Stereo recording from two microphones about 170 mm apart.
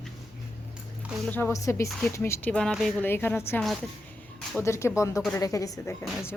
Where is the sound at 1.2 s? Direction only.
10° left (ahead or behind).